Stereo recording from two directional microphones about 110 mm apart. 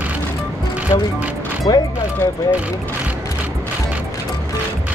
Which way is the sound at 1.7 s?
50° left (ahead or behind).